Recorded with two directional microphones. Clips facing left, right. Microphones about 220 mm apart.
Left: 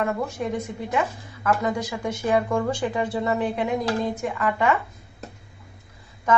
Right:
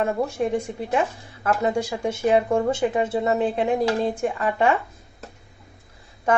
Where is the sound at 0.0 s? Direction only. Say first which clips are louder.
Right 3 dB; 25° right (ahead or behind).